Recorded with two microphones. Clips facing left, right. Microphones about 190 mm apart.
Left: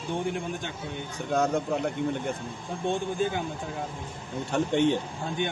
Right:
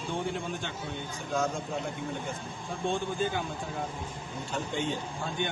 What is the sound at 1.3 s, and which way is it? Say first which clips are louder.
Speech: left 5 dB; 65° left (ahead or behind).